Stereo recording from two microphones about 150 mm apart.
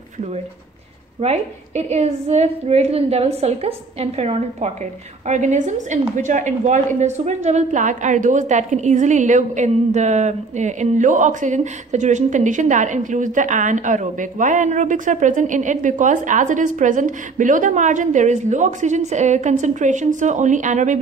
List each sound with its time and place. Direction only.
1.2 s a woman's voice: 45° right (ahead or behind)